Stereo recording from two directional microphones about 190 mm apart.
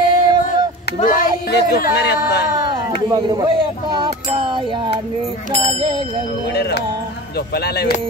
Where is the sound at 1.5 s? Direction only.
55° left (ahead or behind).